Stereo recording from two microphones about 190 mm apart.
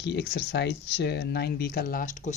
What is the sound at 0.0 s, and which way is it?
Speech, 60° left (ahead or behind).